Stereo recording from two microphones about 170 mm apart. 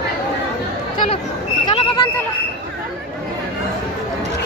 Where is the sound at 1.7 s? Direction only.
30° left (ahead or behind).